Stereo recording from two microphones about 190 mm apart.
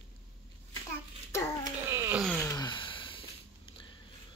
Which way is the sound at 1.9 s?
15° right (ahead or behind).